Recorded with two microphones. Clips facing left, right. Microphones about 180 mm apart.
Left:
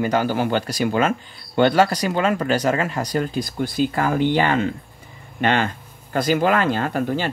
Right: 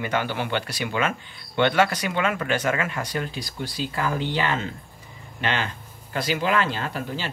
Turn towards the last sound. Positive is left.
turn(degrees=50)  # may be behind; listen again after turning